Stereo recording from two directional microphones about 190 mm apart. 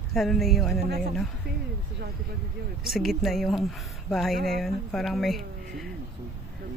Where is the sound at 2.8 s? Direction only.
Centre (ahead or behind).